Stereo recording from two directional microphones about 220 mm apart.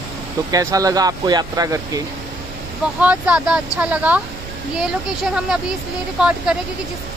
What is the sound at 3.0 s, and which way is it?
Speech, 5° right (ahead or behind).